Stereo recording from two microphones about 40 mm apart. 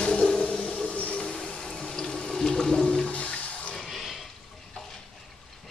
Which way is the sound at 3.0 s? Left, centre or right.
Left.